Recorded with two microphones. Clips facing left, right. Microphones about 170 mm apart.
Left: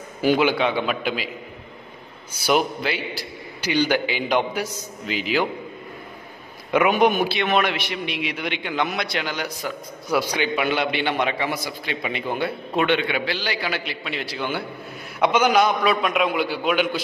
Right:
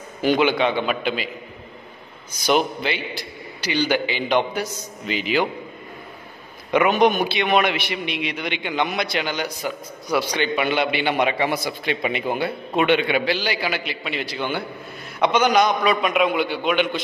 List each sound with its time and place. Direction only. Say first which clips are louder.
0.2 s a man's voice: even; 5° left (ahead or behind)
2.4 s a man's voice: right 1 dB; 5° left (ahead or behind)
6.7 s a man's voice: right 1 dB; 5° left (ahead or behind); by 12.4 s 15° right (ahead or behind)
12.4 s a man's voice: right 1 dB; 5° right (ahead or behind)
12.9 s a man's voice: right 3 dB; 15° right (ahead or behind); by 17.0 s centre (ahead or behind)